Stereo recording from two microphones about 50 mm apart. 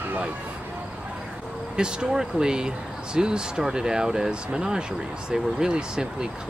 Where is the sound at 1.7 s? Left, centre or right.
Centre.